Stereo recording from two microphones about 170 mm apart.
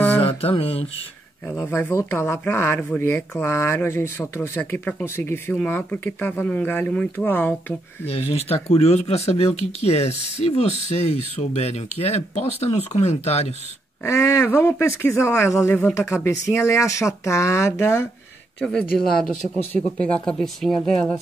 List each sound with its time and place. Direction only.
0.2 s mantra: 35° left (ahead or behind)
1.6 s speech: 15° left (ahead or behind)
8.2 s speech: 35° left (ahead or behind)
14.0 s speech: 15° left (ahead or behind)